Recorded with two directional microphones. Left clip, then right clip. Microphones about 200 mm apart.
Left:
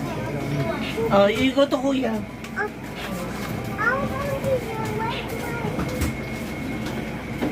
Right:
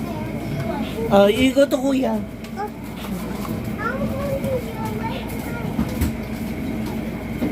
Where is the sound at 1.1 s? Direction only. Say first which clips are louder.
Right 4 dB; 15° right (ahead or behind).